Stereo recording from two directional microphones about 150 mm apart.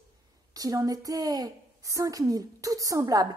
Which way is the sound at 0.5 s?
25° right (ahead or behind).